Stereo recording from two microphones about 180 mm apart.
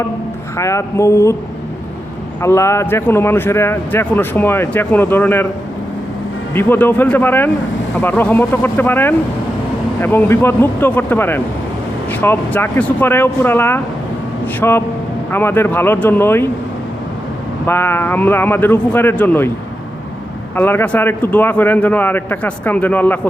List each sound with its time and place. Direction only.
0.5 s a man's voice: 15° left (ahead or behind)
2.4 s a man's voice: 15° left (ahead or behind)
6.5 s a man's voice: 10° left (ahead or behind)
14.4 s vehicle: 10° left (ahead or behind)
15.3 s a man's voice: 10° left (ahead or behind)
17.7 s a man's voice: 10° left (ahead or behind)
20.6 s a man's voice: 10° left (ahead or behind)